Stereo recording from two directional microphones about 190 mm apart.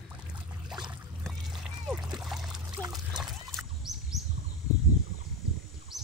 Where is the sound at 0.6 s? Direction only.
Centre (ahead or behind).